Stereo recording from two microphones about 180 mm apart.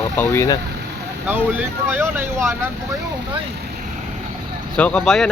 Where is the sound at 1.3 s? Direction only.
10° right (ahead or behind).